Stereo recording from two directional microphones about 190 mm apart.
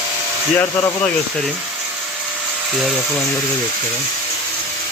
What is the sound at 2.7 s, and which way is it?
Speech, centre (ahead or behind).